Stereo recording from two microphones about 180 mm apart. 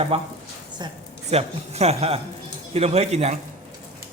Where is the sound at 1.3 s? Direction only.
35° right (ahead or behind).